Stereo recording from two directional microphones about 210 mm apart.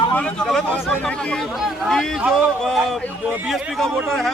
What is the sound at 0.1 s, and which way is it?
Speech, 5° left (ahead or behind).